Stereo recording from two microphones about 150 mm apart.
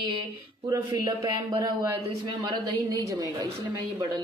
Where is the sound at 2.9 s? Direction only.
25° right (ahead or behind).